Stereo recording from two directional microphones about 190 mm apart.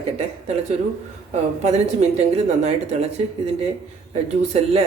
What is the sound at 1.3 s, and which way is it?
A woman's voice, 35° right (ahead or behind).